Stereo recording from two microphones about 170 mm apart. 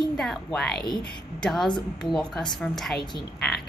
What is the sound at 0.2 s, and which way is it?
Speech, centre (ahead or behind).